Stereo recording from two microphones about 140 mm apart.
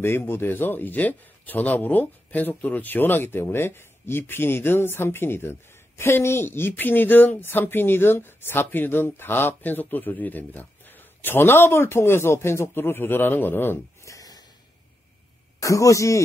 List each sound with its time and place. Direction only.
0.0 s speech: 15° left (ahead or behind)
15.6 s speech: 25° left (ahead or behind)